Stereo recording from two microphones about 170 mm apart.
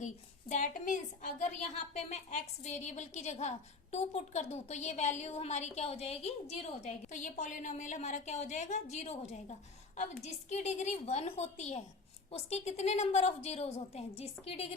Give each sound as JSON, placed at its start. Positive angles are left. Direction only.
{"t": 0.0, "sound": "a woman's voice", "side_deg": 50}